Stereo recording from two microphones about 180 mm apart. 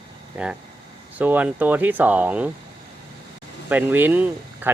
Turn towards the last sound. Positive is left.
turn(degrees=-10)  # may be behind; listen again after turning